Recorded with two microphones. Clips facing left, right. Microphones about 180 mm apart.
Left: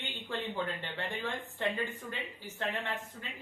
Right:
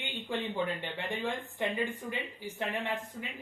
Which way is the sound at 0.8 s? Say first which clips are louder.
Right 3 dB; 15° right (ahead or behind).